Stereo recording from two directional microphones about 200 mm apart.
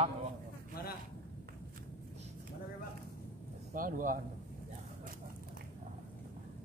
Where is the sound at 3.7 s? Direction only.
45° right (ahead or behind).